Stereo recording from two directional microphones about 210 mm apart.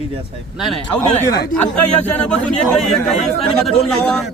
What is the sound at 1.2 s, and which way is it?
Speech, 20° left (ahead or behind).